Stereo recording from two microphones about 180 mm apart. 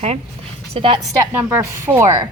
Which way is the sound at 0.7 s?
30° right (ahead or behind).